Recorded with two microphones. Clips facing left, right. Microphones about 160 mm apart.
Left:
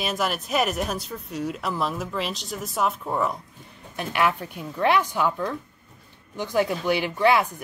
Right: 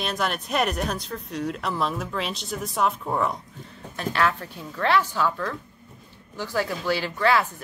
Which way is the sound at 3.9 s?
15° left (ahead or behind).